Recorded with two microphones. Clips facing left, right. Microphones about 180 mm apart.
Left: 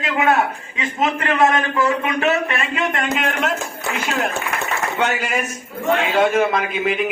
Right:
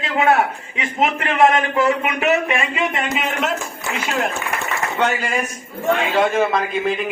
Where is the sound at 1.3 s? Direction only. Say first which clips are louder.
Right 3 dB; 25° right (ahead or behind).